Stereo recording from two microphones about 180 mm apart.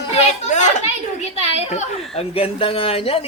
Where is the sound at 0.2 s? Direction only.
40° left (ahead or behind).